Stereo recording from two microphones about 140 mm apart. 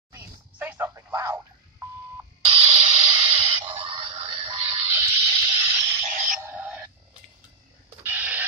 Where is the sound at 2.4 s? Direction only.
45° right (ahead or behind).